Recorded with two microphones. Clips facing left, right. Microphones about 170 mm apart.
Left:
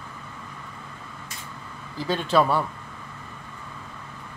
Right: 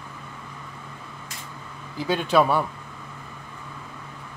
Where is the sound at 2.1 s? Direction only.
10° right (ahead or behind).